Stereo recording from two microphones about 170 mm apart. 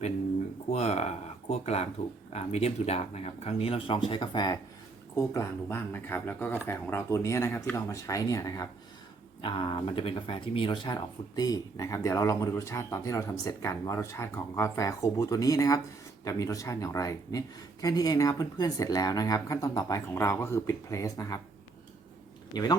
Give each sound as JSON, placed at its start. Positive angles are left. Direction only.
{"t": 0.7, "sound": "speech", "side_deg": 40}
{"t": 22.5, "sound": "speech", "side_deg": 25}